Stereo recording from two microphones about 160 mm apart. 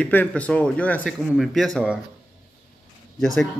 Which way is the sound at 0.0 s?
10° left (ahead or behind).